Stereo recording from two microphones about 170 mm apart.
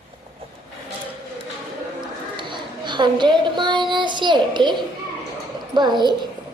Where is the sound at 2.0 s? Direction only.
25° right (ahead or behind).